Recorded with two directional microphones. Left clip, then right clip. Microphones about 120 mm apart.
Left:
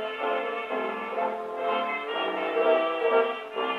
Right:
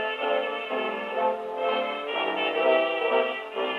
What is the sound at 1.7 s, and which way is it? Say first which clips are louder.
Music: left 1 dB; 40° right (ahead or behind).